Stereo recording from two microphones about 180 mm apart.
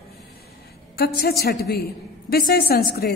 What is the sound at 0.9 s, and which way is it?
A woman's voice, 60° left (ahead or behind).